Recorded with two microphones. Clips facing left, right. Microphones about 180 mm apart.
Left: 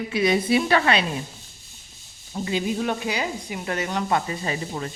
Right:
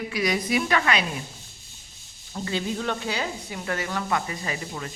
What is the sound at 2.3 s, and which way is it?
Speech, 15° left (ahead or behind).